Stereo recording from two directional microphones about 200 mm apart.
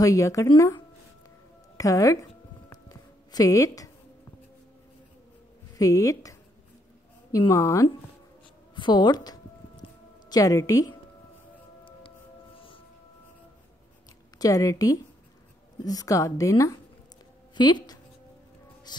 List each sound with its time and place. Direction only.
0.0 s a woman's voice: 15° left (ahead or behind)
2.7 s music: 20° left (ahead or behind)
5.8 s a woman's voice: 15° left (ahead or behind)
7.3 s a woman's voice: 15° left (ahead or behind)
12.5 s singing bowl: 25° left (ahead or behind)
14.4 s a woman's voice: 15° left (ahead or behind)
18.9 s music: 20° left (ahead or behind)